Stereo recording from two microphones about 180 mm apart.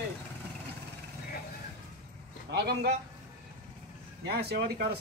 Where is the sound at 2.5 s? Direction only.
65° right (ahead or behind).